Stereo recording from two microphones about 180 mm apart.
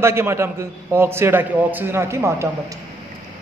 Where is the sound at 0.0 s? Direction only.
15° right (ahead or behind).